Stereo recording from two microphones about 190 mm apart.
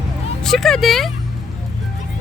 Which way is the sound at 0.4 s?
Centre (ahead or behind).